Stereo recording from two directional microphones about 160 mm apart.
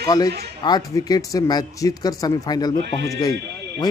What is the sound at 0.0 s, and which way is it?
A man's voice, 25° left (ahead or behind).